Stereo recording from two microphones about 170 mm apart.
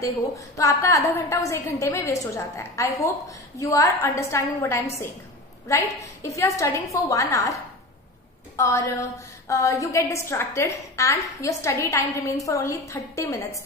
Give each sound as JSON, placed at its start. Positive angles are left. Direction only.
{"t": 0.6, "sound": "a woman's voice", "side_deg": 20}
{"t": 8.5, "sound": "a woman's voice", "side_deg": 20}